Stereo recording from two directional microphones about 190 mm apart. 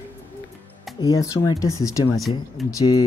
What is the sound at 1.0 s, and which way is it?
Speech, 20° left (ahead or behind).